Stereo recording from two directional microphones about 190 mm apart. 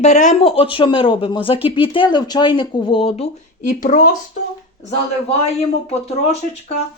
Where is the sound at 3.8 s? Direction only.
45° left (ahead or behind).